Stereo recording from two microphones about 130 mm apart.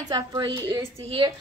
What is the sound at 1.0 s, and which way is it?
Speech, 40° right (ahead or behind).